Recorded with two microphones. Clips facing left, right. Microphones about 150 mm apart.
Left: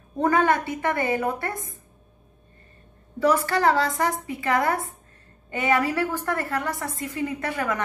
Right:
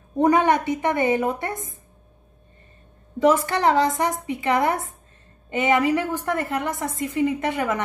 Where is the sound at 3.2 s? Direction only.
20° right (ahead or behind).